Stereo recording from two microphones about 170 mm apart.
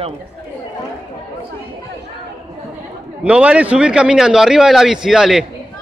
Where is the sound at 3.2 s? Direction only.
5° right (ahead or behind).